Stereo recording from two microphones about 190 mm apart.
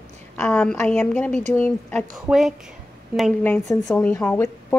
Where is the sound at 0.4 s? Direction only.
5° left (ahead or behind).